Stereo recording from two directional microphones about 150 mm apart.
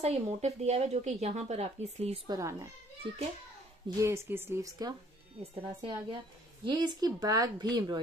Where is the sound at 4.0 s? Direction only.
20° right (ahead or behind).